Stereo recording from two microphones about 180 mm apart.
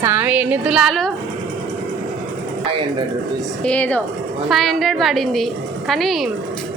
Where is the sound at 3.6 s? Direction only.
5° left (ahead or behind).